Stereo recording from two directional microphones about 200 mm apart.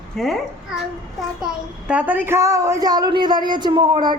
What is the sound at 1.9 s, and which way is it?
A woman's voice, 5° right (ahead or behind).